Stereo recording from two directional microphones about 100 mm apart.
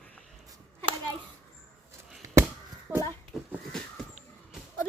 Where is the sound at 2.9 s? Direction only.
25° right (ahead or behind).